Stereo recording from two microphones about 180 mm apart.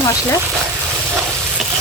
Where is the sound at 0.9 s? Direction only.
5° right (ahead or behind).